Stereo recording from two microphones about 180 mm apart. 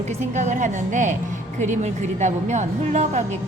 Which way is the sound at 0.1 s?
40° right (ahead or behind).